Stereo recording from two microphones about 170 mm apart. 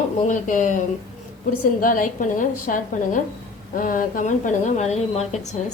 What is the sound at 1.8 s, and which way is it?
A woman's voice, 55° left (ahead or behind).